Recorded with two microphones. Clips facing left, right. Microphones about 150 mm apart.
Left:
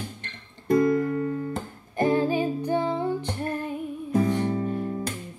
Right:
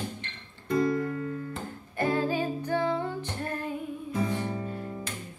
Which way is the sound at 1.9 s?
20° left (ahead or behind).